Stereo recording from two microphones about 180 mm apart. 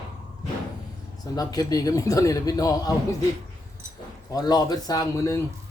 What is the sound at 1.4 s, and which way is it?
A man's voice, 20° left (ahead or behind).